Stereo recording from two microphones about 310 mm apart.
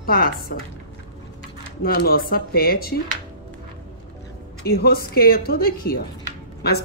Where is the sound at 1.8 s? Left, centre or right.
Left.